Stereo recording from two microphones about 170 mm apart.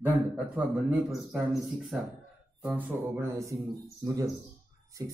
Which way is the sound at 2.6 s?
15° right (ahead or behind).